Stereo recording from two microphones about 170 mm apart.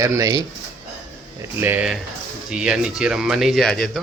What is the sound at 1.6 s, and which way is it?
Speech, 10° right (ahead or behind).